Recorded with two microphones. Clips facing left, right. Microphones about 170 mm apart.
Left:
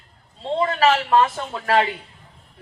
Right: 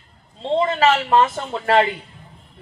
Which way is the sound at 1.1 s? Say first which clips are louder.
Right 1 dB; 25° right (ahead or behind).